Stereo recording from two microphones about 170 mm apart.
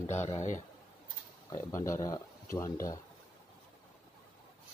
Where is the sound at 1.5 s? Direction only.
15° left (ahead or behind).